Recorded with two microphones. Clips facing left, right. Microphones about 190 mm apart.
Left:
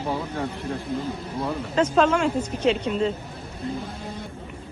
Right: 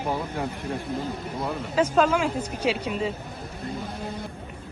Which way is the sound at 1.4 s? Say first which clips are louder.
Left 1 dB; 5° right (ahead or behind).